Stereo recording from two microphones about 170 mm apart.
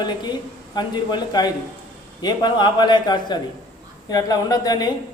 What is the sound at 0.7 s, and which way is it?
A man's voice, 25° left (ahead or behind).